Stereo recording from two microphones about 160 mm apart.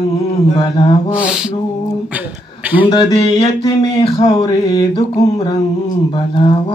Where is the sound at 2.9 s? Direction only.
25° left (ahead or behind).